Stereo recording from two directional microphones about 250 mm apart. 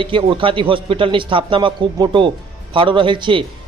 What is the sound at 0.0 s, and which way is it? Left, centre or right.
A man's voice, right.